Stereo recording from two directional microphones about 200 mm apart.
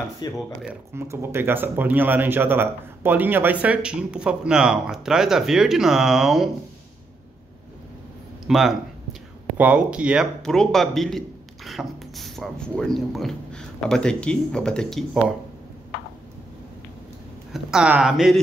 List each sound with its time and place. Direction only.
0.2 s speech: 20° left (ahead or behind)
0.9 s speech: 15° right (ahead or behind)
8.5 s a man's voice: centre (ahead or behind)
17.5 s a man's voice: 5° right (ahead or behind)